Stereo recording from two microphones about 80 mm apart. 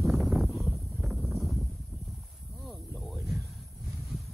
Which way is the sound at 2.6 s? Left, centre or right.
Centre.